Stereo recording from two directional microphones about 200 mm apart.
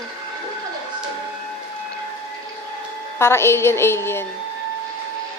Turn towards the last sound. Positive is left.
turn(degrees=10)  # may be behind; listen again after turning